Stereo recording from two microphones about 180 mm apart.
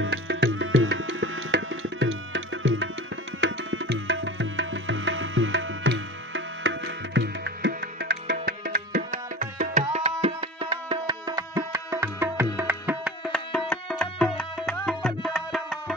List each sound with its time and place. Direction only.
0.0 s music: 75° right (ahead or behind)
8.5 s music: 50° right (ahead or behind)
10.2 s music: 30° right (ahead or behind); by 15.8 s centre (ahead or behind)